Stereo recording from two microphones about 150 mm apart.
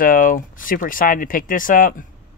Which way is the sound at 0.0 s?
65° left (ahead or behind).